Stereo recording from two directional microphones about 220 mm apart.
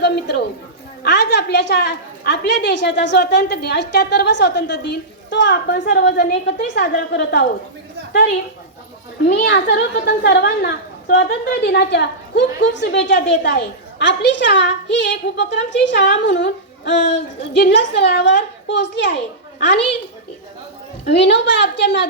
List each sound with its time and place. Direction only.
0.0 s a child's voice: 50° left (ahead or behind)
9.2 s a child's voice: 45° left (ahead or behind)
21.1 s a child's voice: 50° left (ahead or behind)